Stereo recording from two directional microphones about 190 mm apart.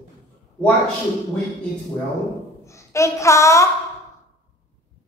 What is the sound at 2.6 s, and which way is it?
A woman's voice, 15° left (ahead or behind).